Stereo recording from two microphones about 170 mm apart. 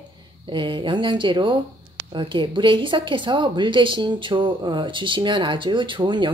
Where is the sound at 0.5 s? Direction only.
30° right (ahead or behind).